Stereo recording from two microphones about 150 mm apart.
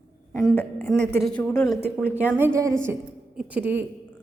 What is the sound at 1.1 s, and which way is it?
Speech, 5° left (ahead or behind).